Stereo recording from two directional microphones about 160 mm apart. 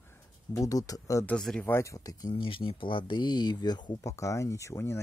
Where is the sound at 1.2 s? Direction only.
5° left (ahead or behind).